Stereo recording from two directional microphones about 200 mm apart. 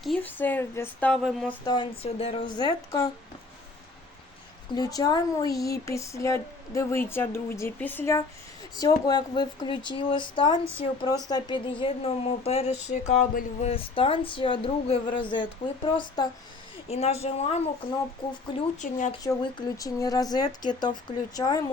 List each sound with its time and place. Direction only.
0.0 s speech: 5° left (ahead or behind)
1.6 s speech: 20° left (ahead or behind)
4.7 s speech: 20° left (ahead or behind)
16.9 s a woman's voice: 30° left (ahead or behind)
17.8 s a woman's voice: 45° left (ahead or behind)
19.2 s speech: 20° left (ahead or behind)